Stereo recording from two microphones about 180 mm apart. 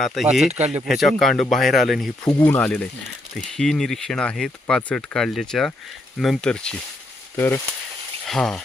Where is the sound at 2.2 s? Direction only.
20° left (ahead or behind).